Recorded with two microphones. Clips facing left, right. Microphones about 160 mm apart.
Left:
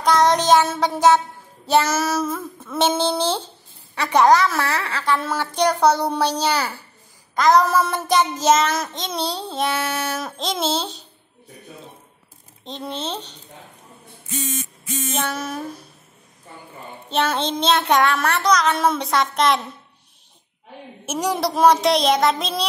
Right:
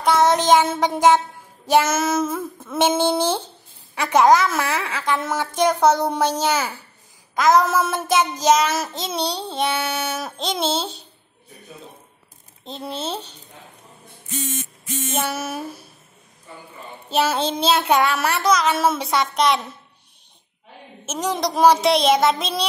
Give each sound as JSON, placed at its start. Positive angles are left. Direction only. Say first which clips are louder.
{"t": 0.2, "sound": "a woman's voice", "louder": "right 1 dB", "side_deg": -10}
{"t": 2.0, "sound": "child singing", "louder": "right 1 dB", "side_deg": -20}
{"t": 2.2, "sound": "a woman's voice", "louder": "right 1 dB", "side_deg": -10}
{"t": 7.3, "sound": "a woman's voice", "louder": "left 1 dB", "side_deg": -5}
{"t": 8.6, "sound": "child singing", "louder": "even", "side_deg": -5}
{"t": 12.6, "sound": "child singing", "louder": "even", "side_deg": -5}
{"t": 15.1, "sound": "a woman's voice", "louder": "right 1 dB", "side_deg": -5}
{"t": 17.1, "sound": "child singing", "louder": "right 1 dB", "side_deg": -5}
{"t": 21.0, "sound": "child singing", "louder": "left 1 dB", "side_deg": 10}